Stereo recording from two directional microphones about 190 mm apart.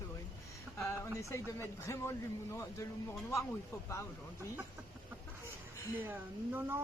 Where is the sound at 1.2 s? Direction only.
15° left (ahead or behind).